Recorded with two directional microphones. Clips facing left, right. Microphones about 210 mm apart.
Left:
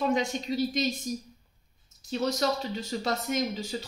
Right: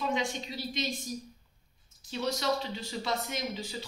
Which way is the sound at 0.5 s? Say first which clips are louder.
Left 12 dB; 45° left (ahead or behind).